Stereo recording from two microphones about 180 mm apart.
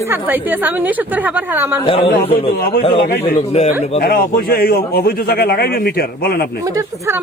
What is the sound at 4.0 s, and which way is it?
A man's voice, 55° left (ahead or behind).